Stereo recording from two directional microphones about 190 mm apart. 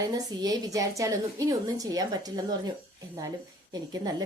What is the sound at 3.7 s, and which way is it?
Speech, 20° right (ahead or behind).